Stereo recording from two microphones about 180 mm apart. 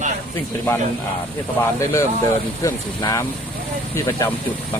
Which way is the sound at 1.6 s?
15° left (ahead or behind).